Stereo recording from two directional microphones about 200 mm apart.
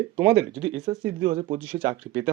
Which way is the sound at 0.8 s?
25° right (ahead or behind).